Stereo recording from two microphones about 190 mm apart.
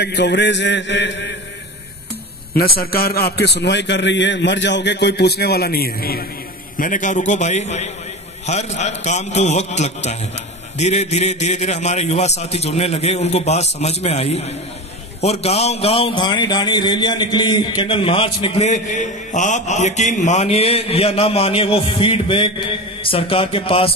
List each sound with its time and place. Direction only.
0.0 s a man's voice: 65° left (ahead or behind)
2.5 s a man's voice: 55° left (ahead or behind); by 23.9 s 30° left (ahead or behind)